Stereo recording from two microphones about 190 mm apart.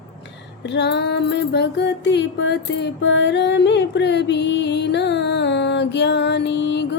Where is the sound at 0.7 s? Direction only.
65° left (ahead or behind).